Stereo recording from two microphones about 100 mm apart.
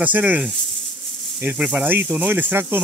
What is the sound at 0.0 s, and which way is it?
Speech, 15° right (ahead or behind).